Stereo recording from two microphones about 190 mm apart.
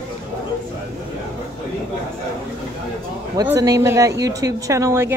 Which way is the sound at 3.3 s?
15° right (ahead or behind).